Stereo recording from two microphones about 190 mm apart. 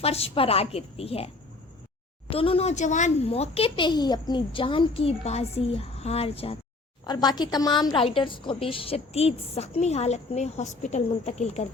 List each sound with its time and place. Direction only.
0.0 s a woman's voice: 30° left (ahead or behind)
2.3 s a woman's voice: 30° left (ahead or behind)